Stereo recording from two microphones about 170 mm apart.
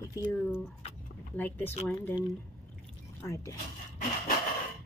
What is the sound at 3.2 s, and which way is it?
Speech, 15° left (ahead or behind).